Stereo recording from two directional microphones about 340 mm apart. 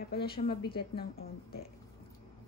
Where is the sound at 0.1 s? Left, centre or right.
Left.